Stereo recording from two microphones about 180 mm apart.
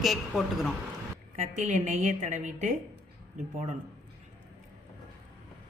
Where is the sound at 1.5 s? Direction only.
40° right (ahead or behind).